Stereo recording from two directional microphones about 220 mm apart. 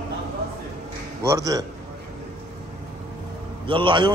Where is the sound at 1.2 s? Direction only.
15° right (ahead or behind).